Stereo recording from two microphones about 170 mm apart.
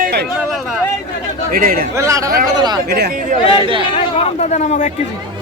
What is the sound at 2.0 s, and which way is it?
Speech, 20° right (ahead or behind).